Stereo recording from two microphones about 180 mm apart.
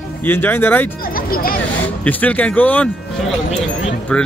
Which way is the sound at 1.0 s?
55° left (ahead or behind).